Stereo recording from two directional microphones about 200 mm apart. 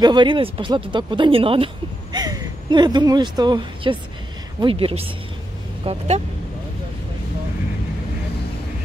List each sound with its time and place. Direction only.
0.0 s a woman's voice: 25° right (ahead or behind)